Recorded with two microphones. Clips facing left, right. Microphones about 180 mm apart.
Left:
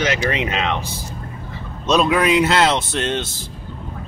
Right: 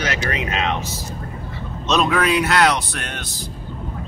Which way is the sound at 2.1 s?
20° left (ahead or behind).